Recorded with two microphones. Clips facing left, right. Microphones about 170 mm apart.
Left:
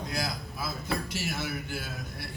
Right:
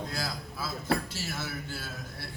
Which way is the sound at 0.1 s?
15° left (ahead or behind).